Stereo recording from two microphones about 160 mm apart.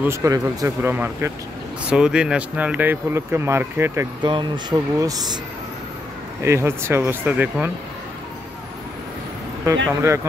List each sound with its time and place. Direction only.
0.0 s speech: 20° right (ahead or behind)
4.2 s speech: 30° right (ahead or behind)
6.4 s speech: 15° right (ahead or behind)
9.7 s speech: 20° right (ahead or behind)